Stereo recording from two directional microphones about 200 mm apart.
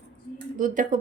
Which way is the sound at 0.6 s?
40° right (ahead or behind).